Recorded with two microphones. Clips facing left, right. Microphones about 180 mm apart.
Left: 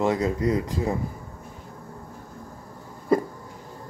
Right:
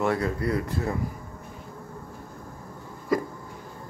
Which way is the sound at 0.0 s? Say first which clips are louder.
Left 3 dB; 15° left (ahead or behind).